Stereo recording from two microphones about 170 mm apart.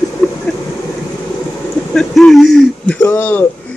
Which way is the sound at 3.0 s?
15° left (ahead or behind).